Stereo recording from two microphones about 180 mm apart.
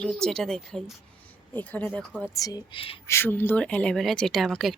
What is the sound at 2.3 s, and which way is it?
Speech, 20° left (ahead or behind).